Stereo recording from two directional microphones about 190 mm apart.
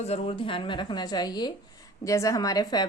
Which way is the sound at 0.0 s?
30° left (ahead or behind).